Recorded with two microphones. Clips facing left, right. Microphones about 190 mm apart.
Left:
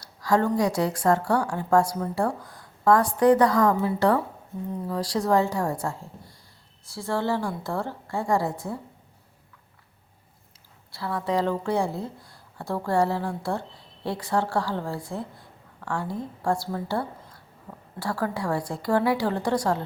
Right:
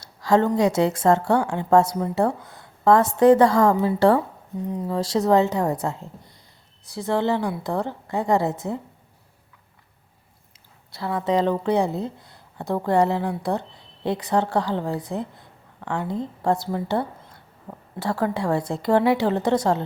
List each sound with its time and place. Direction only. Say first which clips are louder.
0.0 s a woman's voice: right 4 dB; 25° right (ahead or behind)
10.9 s a woman's voice: right 4 dB; 20° right (ahead or behind)